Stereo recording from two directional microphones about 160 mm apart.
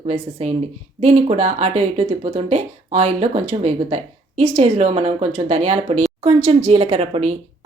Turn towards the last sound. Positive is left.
turn(degrees=-40)  # may be behind; listen again after turning